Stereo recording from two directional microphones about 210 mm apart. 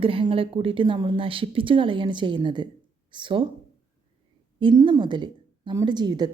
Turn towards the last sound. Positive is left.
turn(degrees=-20)  # may be behind; listen again after turning